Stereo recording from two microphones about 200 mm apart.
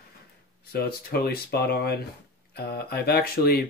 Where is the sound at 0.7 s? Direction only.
50° left (ahead or behind).